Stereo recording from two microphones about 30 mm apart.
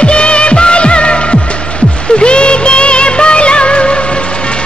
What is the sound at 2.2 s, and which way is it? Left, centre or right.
Music of bollywood, left.